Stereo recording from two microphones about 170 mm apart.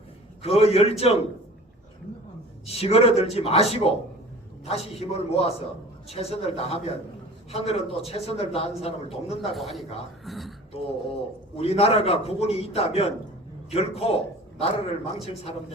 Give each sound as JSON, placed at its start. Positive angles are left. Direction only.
{"t": 0.4, "sound": "a man's voice", "side_deg": 35}
{"t": 2.6, "sound": "a man's voice", "side_deg": 35}
{"t": 9.6, "sound": "speech", "side_deg": 0}
{"t": 10.7, "sound": "a man's voice", "side_deg": 35}